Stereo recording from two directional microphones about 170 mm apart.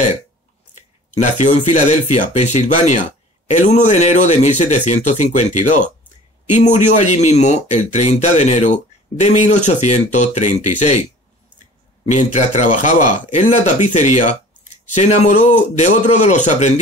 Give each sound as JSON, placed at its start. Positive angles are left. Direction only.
{"t": 0.7, "sound": "speech", "side_deg": 45}
{"t": 12.1, "sound": "speech", "side_deg": 45}